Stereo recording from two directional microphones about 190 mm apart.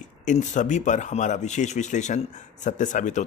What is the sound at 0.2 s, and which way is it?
Speech, 40° left (ahead or behind).